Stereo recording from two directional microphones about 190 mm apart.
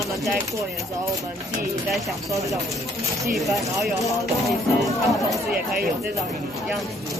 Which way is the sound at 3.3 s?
Centre (ahead or behind).